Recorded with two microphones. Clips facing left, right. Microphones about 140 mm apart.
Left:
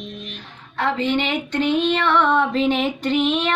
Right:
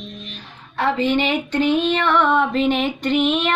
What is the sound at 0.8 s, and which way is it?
Female singing, 10° right (ahead or behind).